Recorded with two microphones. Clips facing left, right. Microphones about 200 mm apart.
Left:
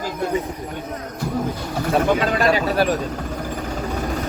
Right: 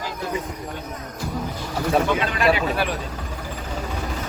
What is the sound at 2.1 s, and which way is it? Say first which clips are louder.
Speech: left 2 dB; 40° left (ahead or behind).